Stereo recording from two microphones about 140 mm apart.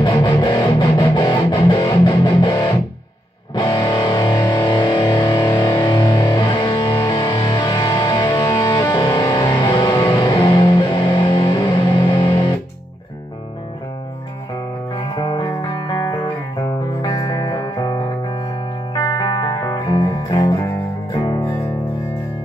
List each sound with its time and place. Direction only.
0.0 s music: 30° left (ahead or behind)
15.1 s music: 30° left (ahead or behind)
18.9 s music: 30° left (ahead or behind)